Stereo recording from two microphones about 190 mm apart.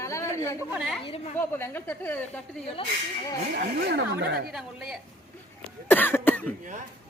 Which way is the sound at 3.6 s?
60° right (ahead or behind).